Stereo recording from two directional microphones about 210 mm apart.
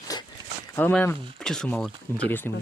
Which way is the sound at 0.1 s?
20° left (ahead or behind).